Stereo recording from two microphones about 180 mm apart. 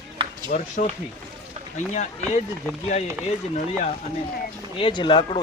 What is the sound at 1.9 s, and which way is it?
Speech, 40° left (ahead or behind).